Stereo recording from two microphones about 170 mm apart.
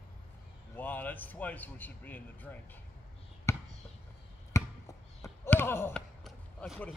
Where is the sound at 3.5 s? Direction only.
15° left (ahead or behind).